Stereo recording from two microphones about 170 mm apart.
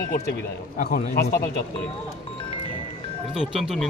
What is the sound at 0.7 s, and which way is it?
Speech, 60° left (ahead or behind).